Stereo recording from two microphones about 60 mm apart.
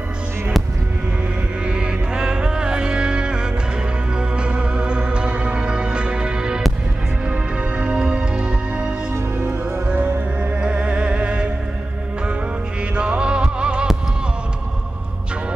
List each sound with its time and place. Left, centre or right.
1.7 s music: centre
12.9 s music: centre